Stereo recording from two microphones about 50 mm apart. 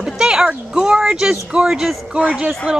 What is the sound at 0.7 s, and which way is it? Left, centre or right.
Speech, centre.